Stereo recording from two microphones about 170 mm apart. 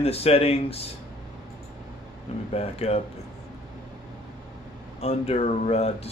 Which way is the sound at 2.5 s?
35° left (ahead or behind).